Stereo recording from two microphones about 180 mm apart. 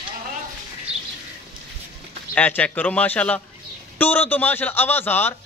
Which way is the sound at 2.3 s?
10° left (ahead or behind).